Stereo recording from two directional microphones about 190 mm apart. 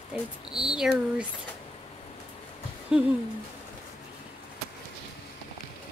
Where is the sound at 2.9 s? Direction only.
5° right (ahead or behind).